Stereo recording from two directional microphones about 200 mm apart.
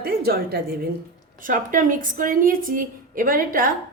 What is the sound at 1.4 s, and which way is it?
A woman's voice, 40° right (ahead or behind).